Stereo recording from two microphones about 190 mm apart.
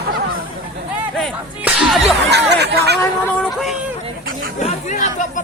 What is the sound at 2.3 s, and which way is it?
Chatter, 60° right (ahead or behind).